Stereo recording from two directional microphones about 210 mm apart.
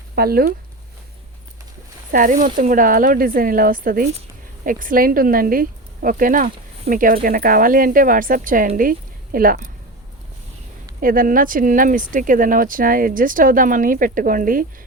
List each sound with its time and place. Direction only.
0.2 s speech: 45° right (ahead or behind)
2.1 s speech: 40° right (ahead or behind)
11.0 s speech: 40° right (ahead or behind)